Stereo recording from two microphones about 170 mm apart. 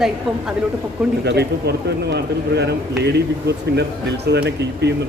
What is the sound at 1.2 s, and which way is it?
A man's voice, 75° right (ahead or behind).